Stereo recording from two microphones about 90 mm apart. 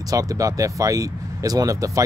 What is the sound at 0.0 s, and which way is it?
Speech, 40° right (ahead or behind).